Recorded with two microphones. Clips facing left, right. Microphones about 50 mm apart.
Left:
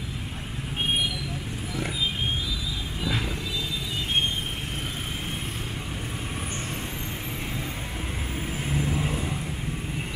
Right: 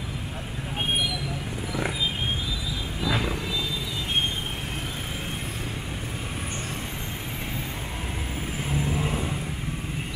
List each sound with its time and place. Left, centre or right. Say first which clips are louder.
8.7 s vehicle: even; centre